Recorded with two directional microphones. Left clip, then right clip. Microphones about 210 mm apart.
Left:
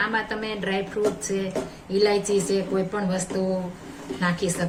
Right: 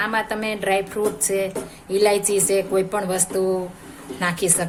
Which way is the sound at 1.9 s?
55° right (ahead or behind).